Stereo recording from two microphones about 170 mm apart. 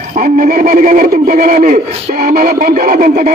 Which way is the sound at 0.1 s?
55° right (ahead or behind).